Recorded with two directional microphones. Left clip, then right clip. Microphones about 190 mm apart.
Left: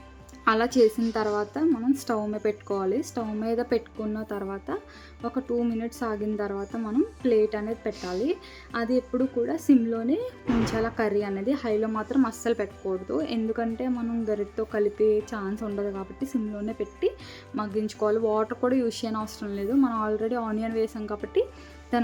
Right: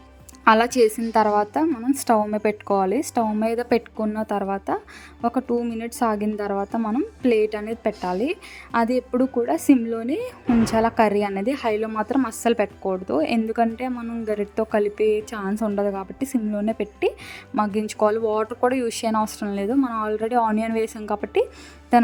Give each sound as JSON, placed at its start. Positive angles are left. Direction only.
{"t": 0.4, "sound": "a woman's voice", "side_deg": -40}
{"t": 21.9, "sound": "music", "side_deg": -40}